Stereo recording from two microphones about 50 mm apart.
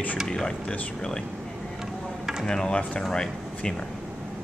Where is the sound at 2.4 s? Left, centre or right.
Centre.